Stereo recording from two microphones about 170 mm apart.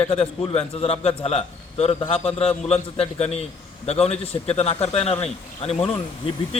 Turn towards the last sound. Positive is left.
turn(degrees=35)  # may be behind; listen again after turning